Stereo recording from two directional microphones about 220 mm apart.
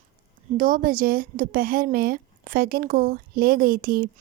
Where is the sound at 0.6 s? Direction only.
40° right (ahead or behind).